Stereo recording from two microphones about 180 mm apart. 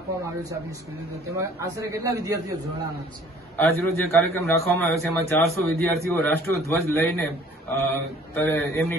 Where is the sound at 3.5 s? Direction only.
15° left (ahead or behind).